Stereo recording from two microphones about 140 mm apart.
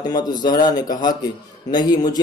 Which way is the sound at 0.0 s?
30° left (ahead or behind).